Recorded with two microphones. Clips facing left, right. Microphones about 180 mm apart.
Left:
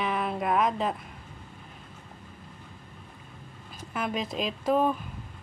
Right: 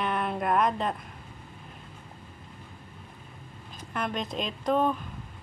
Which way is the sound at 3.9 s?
5° left (ahead or behind).